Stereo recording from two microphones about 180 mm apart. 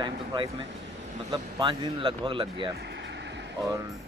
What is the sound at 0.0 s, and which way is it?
Speech, 25° right (ahead or behind).